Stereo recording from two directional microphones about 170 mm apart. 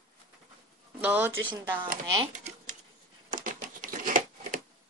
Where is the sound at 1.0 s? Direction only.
10° right (ahead or behind).